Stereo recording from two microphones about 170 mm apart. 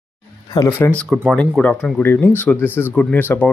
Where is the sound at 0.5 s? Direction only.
15° left (ahead or behind).